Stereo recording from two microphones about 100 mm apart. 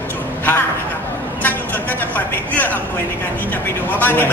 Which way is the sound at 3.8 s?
15° left (ahead or behind).